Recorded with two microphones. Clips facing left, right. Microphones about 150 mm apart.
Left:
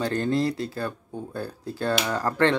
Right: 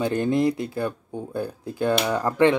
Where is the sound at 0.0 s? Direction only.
15° right (ahead or behind).